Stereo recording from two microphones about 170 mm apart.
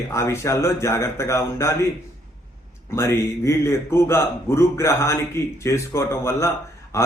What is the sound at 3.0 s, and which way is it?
A man's voice, 15° left (ahead or behind).